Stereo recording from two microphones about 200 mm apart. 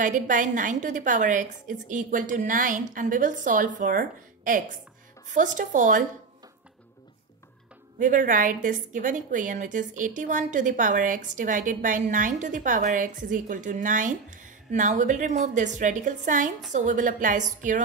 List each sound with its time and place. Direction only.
0.0 s a woman's voice: 40° right (ahead or behind)
8.0 s a woman's voice: 40° right (ahead or behind)